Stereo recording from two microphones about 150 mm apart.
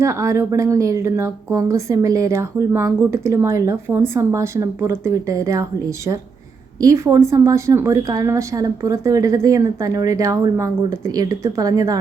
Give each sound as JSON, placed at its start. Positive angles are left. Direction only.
{"t": 0.0, "sound": "speech", "side_deg": -20}